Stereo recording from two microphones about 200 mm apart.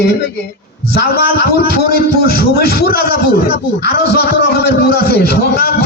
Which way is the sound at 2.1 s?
50° left (ahead or behind).